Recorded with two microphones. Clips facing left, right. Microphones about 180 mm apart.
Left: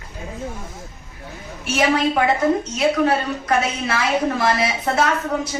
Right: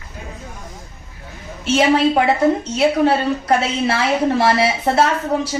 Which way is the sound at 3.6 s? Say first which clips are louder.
Right 3 dB; 30° right (ahead or behind).